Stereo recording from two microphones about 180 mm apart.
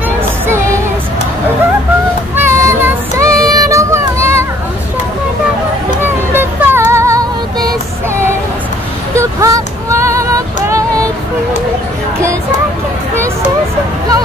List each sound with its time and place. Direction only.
2.3 s child singing: 15° right (ahead or behind)
6.3 s music: 10° right (ahead or behind)
9.1 s a sound: 15° right (ahead or behind)